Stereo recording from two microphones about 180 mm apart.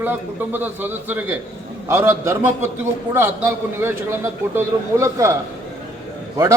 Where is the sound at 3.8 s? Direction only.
10° right (ahead or behind).